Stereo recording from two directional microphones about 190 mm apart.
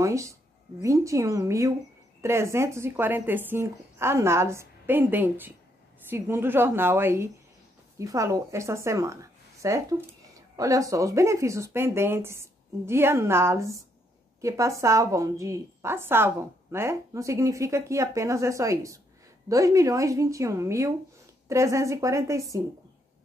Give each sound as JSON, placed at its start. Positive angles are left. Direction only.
{"t": 0.0, "sound": "a woman's voice", "side_deg": -15}